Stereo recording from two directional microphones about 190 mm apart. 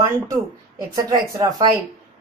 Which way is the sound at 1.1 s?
20° right (ahead or behind).